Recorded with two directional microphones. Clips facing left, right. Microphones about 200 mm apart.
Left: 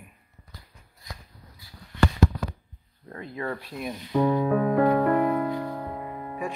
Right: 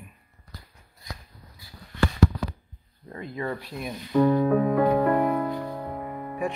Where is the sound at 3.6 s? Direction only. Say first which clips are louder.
Left 1 dB; centre (ahead or behind).